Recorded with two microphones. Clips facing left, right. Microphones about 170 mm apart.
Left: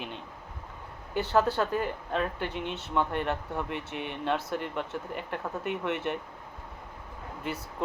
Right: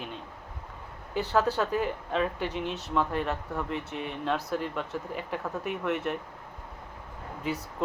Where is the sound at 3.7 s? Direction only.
65° left (ahead or behind).